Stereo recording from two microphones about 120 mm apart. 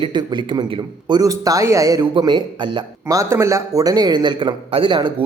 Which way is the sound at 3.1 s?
25° right (ahead or behind).